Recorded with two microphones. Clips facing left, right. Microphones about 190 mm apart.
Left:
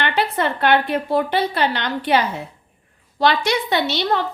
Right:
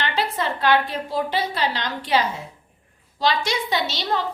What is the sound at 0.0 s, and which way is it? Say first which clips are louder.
A woman's voice: left 4 dB; 60° left (ahead or behind).